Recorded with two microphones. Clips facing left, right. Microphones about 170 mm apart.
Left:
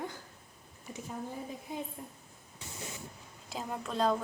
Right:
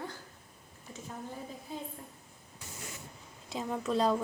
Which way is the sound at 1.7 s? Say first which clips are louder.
Left 2 dB; 20° left (ahead or behind).